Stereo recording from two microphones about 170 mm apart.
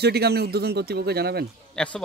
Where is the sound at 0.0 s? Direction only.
70° right (ahead or behind).